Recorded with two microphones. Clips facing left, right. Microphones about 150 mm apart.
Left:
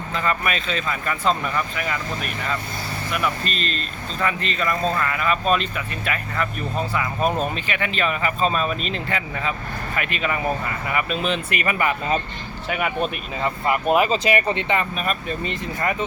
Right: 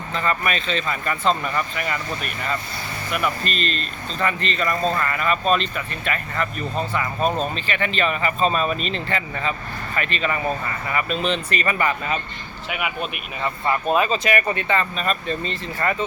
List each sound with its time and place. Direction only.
0.1 s speech: 5° left (ahead or behind)
12.6 s speech: 40° left (ahead or behind)
13.4 s speech: 20° left (ahead or behind)